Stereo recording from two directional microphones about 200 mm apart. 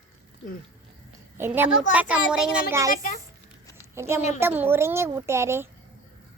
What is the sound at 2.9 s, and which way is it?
Speech, 45° left (ahead or behind).